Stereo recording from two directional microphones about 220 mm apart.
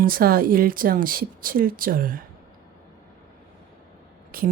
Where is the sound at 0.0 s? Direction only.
40° right (ahead or behind).